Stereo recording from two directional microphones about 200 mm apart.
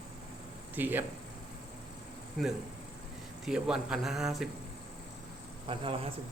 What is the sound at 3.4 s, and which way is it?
A man's voice, 5° right (ahead or behind).